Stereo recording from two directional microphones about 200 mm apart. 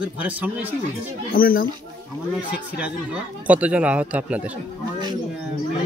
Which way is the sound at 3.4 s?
5° right (ahead or behind).